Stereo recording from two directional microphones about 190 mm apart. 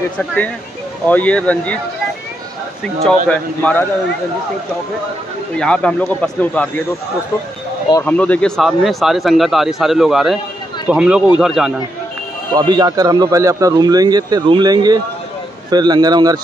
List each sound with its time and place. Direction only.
0.2 s speech: 5° left (ahead or behind)
3.3 s speech: 5° left (ahead or behind)
5.6 s speech: 5° left (ahead or behind)
8.0 s speech: 5° left (ahead or behind)
12.5 s speech: 20° right (ahead or behind)